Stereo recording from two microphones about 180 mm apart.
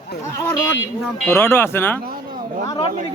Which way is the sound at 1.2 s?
15° left (ahead or behind).